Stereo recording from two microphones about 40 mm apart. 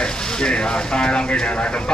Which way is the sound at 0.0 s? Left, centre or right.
Left.